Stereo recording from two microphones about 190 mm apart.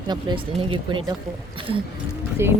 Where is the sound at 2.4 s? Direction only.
15° right (ahead or behind).